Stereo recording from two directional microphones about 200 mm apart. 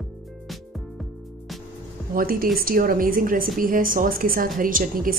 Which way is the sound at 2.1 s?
45° right (ahead or behind).